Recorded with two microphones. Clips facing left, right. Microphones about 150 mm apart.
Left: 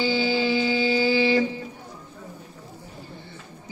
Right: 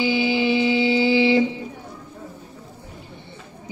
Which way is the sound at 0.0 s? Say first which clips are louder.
Right 2 dB; 20° right (ahead or behind).